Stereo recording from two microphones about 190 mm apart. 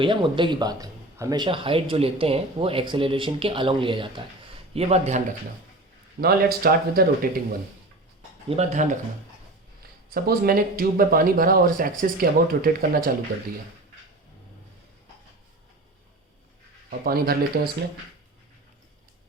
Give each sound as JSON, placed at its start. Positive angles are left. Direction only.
{"t": 0.0, "sound": "speech", "side_deg": -25}
{"t": 6.1, "sound": "speech", "side_deg": -55}
{"t": 8.4, "sound": "speech", "side_deg": -35}
{"t": 10.2, "sound": "speech", "side_deg": -50}
{"t": 17.0, "sound": "speech", "side_deg": -50}